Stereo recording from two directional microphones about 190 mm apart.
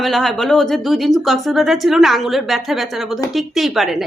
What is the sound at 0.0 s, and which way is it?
A woman's voice, centre (ahead or behind).